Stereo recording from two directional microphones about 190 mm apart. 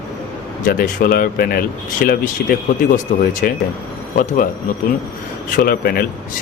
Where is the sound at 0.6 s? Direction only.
50° left (ahead or behind).